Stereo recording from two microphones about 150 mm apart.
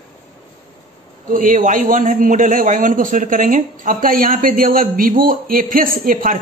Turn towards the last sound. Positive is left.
turn(degrees=-65)  # may be behind; listen again after turning